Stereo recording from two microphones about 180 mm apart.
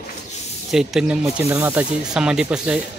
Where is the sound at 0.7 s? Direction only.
5° right (ahead or behind).